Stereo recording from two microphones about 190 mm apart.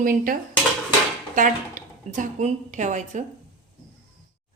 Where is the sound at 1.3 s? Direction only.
45° right (ahead or behind).